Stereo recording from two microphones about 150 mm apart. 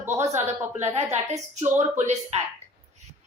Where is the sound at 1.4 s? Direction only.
15° right (ahead or behind).